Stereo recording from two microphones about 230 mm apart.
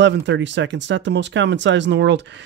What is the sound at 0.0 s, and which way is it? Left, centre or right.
Speech, right.